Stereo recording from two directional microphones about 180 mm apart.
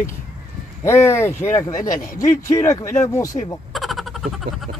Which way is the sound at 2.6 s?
15° left (ahead or behind).